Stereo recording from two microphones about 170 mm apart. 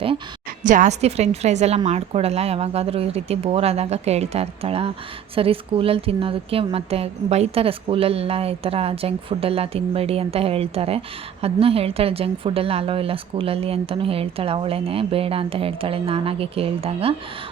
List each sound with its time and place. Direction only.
0.6 s speech: 50° right (ahead or behind)